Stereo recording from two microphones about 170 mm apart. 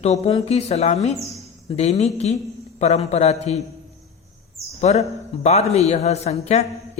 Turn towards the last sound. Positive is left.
turn(degrees=40)  # may be behind; listen again after turning